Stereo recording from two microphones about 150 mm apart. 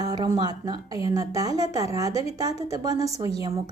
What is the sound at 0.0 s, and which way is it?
Speech, 25° right (ahead or behind).